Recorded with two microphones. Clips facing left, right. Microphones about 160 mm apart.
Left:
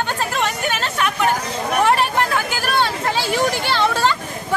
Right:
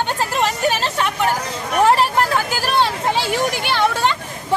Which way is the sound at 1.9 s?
30° right (ahead or behind).